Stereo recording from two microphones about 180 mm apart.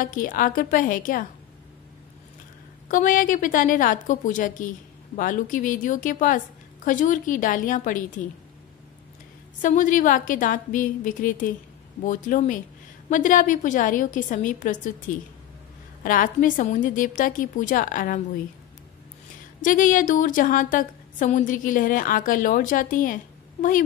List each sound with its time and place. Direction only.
0.0 s a woman's voice: 50° left (ahead or behind)
2.9 s a woman's voice: 50° left (ahead or behind)
9.6 s a woman's voice: 45° left (ahead or behind)
16.0 s a woman's voice: 50° left (ahead or behind)
19.6 s a woman's voice: 45° left (ahead or behind)